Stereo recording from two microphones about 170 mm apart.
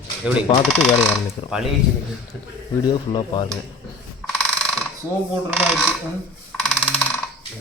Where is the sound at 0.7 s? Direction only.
Centre (ahead or behind).